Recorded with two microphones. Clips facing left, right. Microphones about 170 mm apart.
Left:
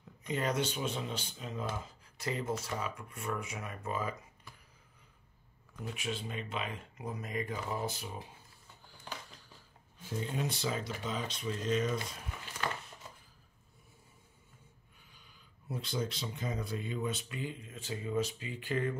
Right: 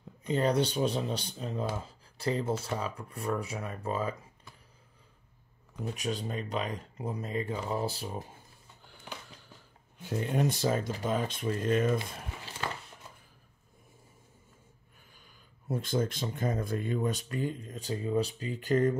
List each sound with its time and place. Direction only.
0.2 s speech: 30° right (ahead or behind)
5.8 s speech: 40° right (ahead or behind)
10.0 s speech: 65° right (ahead or behind)
10.5 s speech: 45° right (ahead or behind)
15.7 s speech: 50° right (ahead or behind)